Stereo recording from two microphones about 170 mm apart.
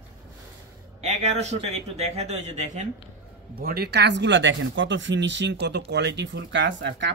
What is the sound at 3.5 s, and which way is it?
Speech, 65° right (ahead or behind).